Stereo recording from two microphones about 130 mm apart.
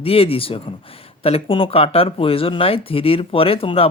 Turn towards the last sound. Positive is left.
turn(degrees=45)  # may be behind; listen again after turning